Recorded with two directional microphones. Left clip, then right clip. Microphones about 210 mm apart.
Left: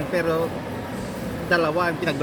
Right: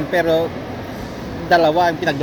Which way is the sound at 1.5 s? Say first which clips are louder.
Right 8 dB; 5° right (ahead or behind).